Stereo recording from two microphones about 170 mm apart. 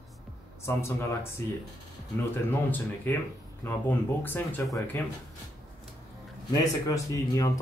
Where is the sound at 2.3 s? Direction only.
10° left (ahead or behind).